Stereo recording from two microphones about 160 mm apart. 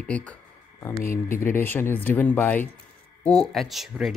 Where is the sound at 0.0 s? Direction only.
10° left (ahead or behind).